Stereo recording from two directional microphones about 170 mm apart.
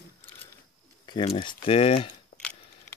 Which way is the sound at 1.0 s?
30° left (ahead or behind).